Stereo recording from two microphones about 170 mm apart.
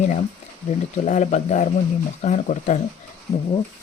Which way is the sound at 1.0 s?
40° left (ahead or behind).